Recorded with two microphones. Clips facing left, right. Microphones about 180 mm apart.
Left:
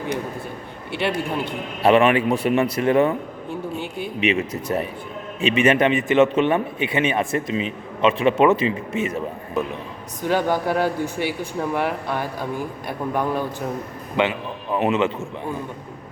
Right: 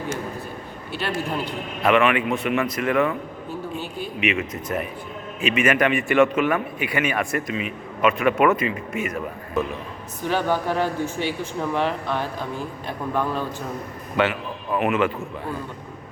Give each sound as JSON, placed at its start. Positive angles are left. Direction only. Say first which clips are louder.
{"t": 1.8, "sound": "a man's voice", "louder": "left 3 dB", "side_deg": 30}
{"t": 4.2, "sound": "a man's voice", "louder": "left 3 dB", "side_deg": 30}
{"t": 10.2, "sound": "a man's voice", "louder": "left 2 dB", "side_deg": 15}